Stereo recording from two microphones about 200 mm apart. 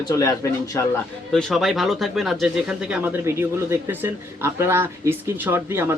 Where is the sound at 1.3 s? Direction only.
Centre (ahead or behind).